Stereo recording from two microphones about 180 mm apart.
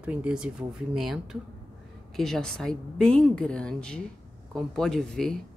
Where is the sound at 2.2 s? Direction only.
5° left (ahead or behind).